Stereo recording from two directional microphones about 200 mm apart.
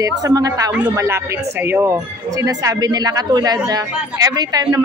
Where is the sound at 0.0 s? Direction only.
20° right (ahead or behind).